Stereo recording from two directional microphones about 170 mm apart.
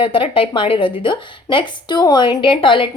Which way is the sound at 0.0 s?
30° left (ahead or behind).